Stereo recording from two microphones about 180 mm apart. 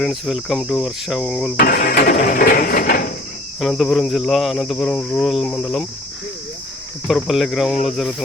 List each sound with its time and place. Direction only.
0.0 s cricket: centre (ahead or behind)
1.5 s speech: 50° left (ahead or behind)
3.6 s cricket: centre (ahead or behind)
7.1 s cricket: centre (ahead or behind)